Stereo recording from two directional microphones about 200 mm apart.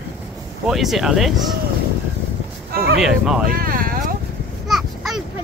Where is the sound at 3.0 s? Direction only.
5° right (ahead or behind).